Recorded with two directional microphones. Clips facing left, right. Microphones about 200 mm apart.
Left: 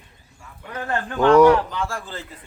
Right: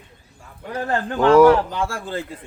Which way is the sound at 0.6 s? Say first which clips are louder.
Right 3 dB; 35° right (ahead or behind).